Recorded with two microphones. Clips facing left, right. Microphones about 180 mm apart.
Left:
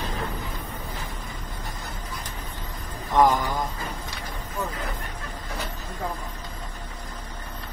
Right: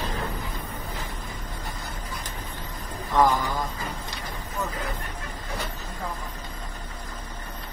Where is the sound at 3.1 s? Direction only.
15° left (ahead or behind).